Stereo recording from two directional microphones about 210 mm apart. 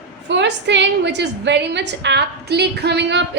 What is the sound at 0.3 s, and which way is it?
A woman's voice, 55° right (ahead or behind).